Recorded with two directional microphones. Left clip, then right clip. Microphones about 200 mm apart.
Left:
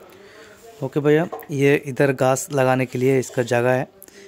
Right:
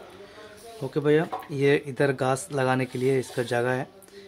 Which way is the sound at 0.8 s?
40° left (ahead or behind).